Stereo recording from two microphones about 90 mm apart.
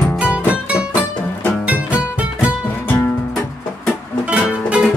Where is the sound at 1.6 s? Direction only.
15° right (ahead or behind).